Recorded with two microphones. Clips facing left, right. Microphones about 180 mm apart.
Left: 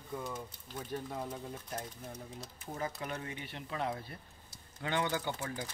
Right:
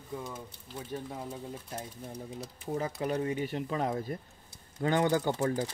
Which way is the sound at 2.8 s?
35° right (ahead or behind).